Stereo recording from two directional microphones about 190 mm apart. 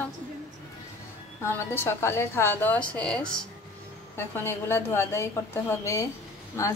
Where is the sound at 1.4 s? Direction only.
10° left (ahead or behind).